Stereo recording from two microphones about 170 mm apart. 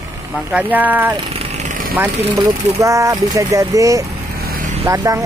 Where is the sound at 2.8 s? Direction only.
20° right (ahead or behind).